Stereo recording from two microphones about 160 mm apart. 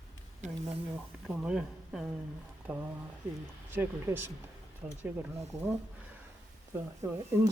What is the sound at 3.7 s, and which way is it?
Speech, 15° right (ahead or behind).